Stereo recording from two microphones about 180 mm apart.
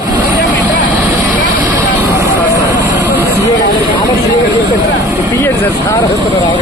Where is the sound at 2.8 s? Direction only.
10° right (ahead or behind).